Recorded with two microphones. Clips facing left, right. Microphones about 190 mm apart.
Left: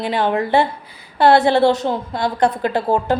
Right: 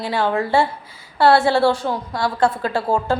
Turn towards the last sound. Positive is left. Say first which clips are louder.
# left 2 dB
turn(degrees=20)  # may be behind; listen again after turning